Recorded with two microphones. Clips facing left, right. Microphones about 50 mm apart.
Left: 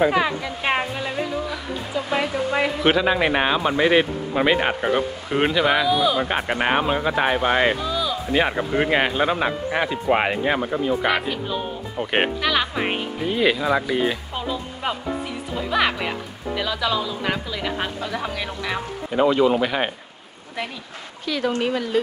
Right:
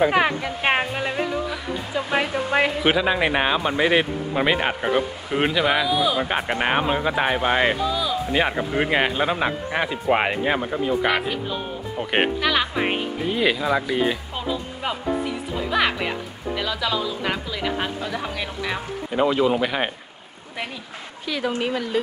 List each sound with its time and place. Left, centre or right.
0.1 s a sound: right
2.8 s a man's voice: centre
21.3 s a man's voice: centre